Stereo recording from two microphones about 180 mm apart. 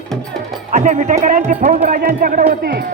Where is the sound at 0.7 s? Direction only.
40° right (ahead or behind); by 2.8 s 60° right (ahead or behind).